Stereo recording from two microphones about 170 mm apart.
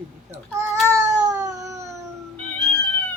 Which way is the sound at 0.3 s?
15° right (ahead or behind).